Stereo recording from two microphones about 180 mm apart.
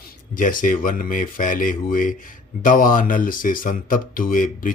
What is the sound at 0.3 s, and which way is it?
Speech, 50° left (ahead or behind).